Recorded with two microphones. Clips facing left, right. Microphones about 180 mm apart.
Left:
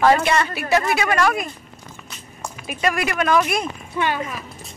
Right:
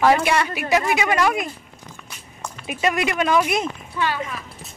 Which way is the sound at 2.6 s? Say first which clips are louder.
Right 1 dB; 20° right (ahead or behind).